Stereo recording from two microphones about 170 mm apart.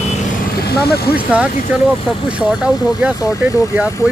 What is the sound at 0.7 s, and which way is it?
Speech, 65° left (ahead or behind).